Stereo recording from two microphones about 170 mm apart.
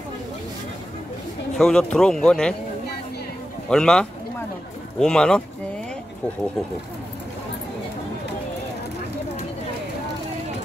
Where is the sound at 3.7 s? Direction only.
5° left (ahead or behind).